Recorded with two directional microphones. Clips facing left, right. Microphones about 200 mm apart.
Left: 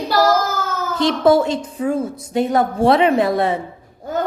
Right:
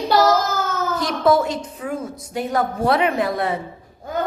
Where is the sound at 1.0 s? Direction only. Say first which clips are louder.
Left 4 dB; 30° left (ahead or behind).